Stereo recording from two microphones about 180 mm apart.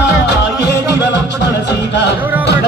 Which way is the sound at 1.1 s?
75° left (ahead or behind).